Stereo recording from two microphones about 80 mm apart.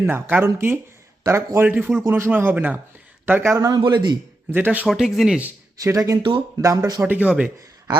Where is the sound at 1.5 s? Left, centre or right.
Right.